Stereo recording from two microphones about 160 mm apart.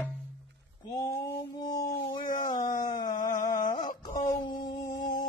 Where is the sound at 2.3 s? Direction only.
55° left (ahead or behind).